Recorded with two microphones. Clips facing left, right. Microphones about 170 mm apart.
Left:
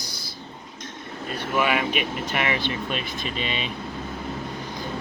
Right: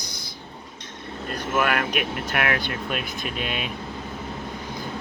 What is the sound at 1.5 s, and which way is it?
Speech, centre (ahead or behind).